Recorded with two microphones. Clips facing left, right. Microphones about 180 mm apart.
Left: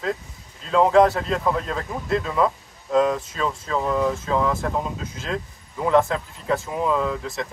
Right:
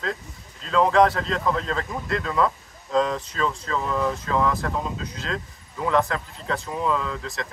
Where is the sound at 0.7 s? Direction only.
15° left (ahead or behind).